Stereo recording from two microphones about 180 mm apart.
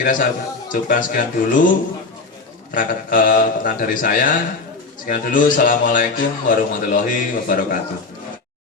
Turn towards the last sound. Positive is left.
turn(degrees=50)  # may be behind; listen again after turning